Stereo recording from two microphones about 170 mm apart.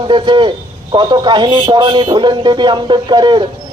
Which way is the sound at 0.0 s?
30° right (ahead or behind).